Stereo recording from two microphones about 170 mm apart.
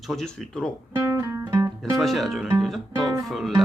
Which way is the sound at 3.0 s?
25° right (ahead or behind).